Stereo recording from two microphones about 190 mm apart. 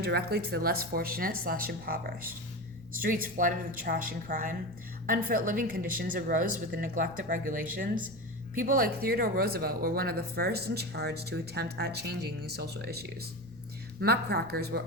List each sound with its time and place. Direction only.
0.0 s speech: 55° right (ahead or behind)